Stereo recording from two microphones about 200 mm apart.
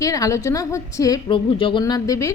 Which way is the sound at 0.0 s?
15° left (ahead or behind).